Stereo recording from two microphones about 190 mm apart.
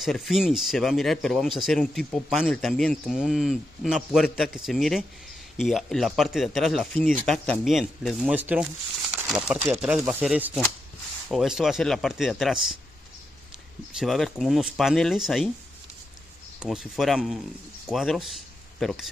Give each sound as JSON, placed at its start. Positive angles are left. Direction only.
{"t": 0.0, "sound": "speech", "side_deg": 0}
{"t": 13.9, "sound": "speech", "side_deg": 0}
{"t": 16.5, "sound": "speech", "side_deg": 0}